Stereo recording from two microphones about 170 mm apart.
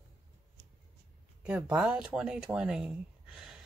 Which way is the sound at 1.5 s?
10° right (ahead or behind).